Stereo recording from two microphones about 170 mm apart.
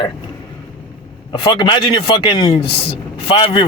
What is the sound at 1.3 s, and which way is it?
Speech, 25° left (ahead or behind).